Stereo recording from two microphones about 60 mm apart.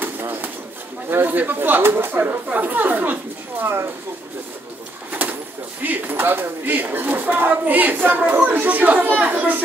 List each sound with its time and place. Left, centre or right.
0.0 s bird: right
1.1 s speech: right
3.6 s speech: right
5.8 s speech: right